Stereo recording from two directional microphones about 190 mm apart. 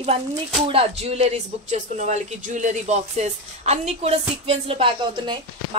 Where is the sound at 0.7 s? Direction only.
30° right (ahead or behind).